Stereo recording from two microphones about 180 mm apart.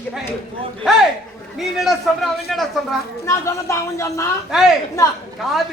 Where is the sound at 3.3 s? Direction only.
15° left (ahead or behind).